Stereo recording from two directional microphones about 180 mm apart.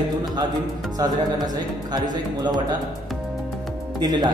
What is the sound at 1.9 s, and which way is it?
Speech, 25° right (ahead or behind).